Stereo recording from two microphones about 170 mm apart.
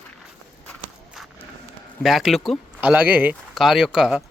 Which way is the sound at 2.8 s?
10° right (ahead or behind).